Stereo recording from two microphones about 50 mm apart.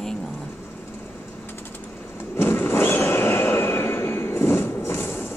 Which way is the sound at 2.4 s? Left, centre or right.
Left.